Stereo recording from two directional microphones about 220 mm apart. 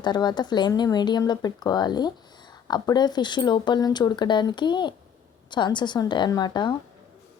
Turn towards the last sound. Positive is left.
turn(degrees=20)  # may be behind; listen again after turning